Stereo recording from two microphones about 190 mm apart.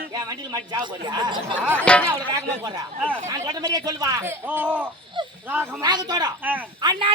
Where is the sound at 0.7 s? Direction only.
20° right (ahead or behind).